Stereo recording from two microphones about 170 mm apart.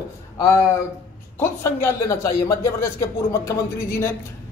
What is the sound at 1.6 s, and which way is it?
Speech, 15° left (ahead or behind).